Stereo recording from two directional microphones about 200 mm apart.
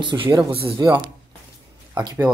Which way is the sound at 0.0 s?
25° right (ahead or behind).